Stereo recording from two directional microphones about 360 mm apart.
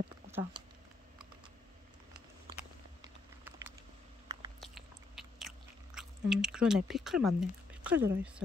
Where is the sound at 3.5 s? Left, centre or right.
Centre.